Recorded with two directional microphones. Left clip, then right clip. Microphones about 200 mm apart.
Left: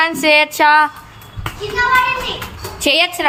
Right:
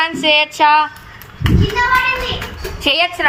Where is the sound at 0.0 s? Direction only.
25° left (ahead or behind).